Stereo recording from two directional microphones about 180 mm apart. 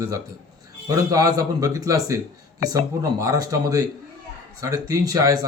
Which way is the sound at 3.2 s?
20° right (ahead or behind).